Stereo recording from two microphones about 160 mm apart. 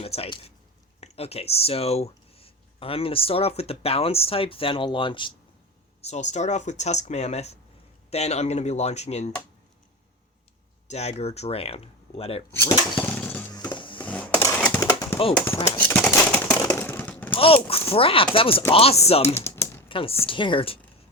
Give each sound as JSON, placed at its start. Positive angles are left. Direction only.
{"t": 1.0, "sound": "speech", "side_deg": 40}
{"t": 6.0, "sound": "speech", "side_deg": 45}
{"t": 10.8, "sound": "speech", "side_deg": 40}
{"t": 12.5, "sound": "speech", "side_deg": 15}
{"t": 13.5, "sound": "a sound", "side_deg": 25}
{"t": 14.0, "sound": "a sound", "side_deg": 10}
{"t": 14.8, "sound": "a sound", "side_deg": 20}
{"t": 15.4, "sound": "speech", "side_deg": 15}
{"t": 16.6, "sound": "a sound", "side_deg": 15}
{"t": 17.3, "sound": "speech", "side_deg": 35}
{"t": 19.2, "sound": "typing", "side_deg": 15}
{"t": 19.9, "sound": "speech", "side_deg": 35}